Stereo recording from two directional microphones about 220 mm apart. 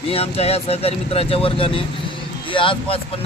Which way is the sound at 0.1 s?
25° left (ahead or behind).